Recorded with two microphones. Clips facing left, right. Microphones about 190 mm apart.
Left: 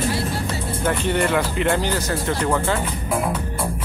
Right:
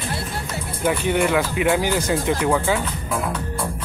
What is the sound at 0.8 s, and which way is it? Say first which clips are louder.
Speech: right 2 dB; 10° right (ahead or behind).